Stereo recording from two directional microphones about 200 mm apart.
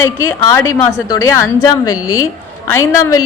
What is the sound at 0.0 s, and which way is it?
A woman's voice, 10° left (ahead or behind).